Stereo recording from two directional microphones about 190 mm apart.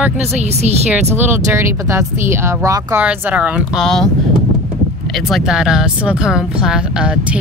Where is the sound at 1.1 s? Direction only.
15° right (ahead or behind).